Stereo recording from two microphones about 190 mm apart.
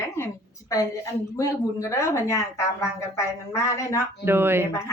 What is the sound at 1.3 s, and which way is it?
Speech, 15° left (ahead or behind).